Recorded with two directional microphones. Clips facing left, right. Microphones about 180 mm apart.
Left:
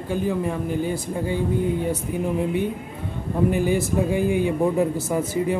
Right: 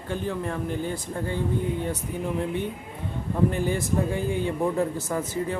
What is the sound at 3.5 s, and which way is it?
A man's voice, 10° left (ahead or behind).